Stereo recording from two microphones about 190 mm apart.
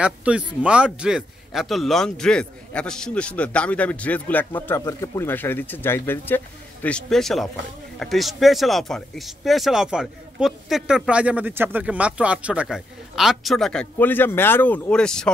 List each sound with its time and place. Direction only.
0.0 s speech: 5° right (ahead or behind)